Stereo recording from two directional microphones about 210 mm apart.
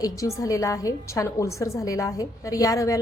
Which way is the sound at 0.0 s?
15° left (ahead or behind).